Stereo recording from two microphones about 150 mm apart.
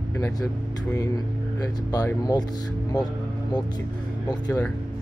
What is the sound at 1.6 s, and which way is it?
Speech, 25° left (ahead or behind).